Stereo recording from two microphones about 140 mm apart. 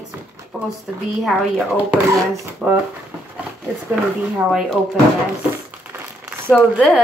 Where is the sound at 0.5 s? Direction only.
5° right (ahead or behind).